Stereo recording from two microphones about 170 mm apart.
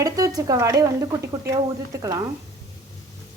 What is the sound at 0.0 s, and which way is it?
Speech, 20° right (ahead or behind).